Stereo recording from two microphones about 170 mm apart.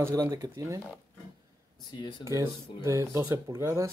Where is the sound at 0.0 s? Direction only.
15° right (ahead or behind).